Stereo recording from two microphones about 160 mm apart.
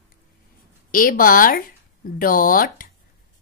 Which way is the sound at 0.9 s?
60° left (ahead or behind).